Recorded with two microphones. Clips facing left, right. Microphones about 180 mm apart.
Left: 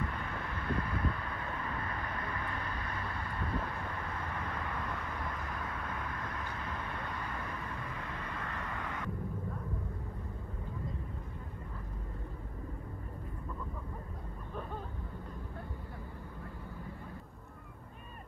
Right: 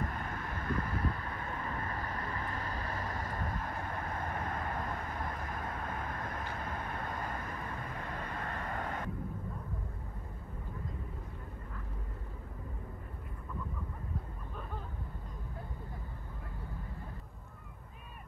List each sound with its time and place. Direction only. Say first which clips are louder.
0.0 s vehicle: even; 45° right (ahead or behind)